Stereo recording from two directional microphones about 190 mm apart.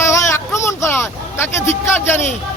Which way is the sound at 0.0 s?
15° left (ahead or behind).